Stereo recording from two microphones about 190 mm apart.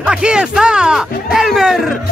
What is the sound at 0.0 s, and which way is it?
Speech, 5° right (ahead or behind).